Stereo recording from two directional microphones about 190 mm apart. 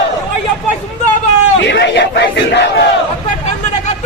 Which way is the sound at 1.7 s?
65° left (ahead or behind).